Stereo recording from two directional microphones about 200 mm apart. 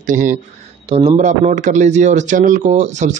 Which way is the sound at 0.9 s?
30° right (ahead or behind).